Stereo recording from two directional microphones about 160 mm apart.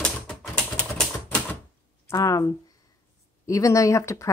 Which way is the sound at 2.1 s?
20° left (ahead or behind).